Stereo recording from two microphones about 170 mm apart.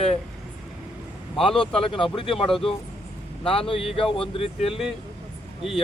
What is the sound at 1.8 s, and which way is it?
Speech, 30° left (ahead or behind).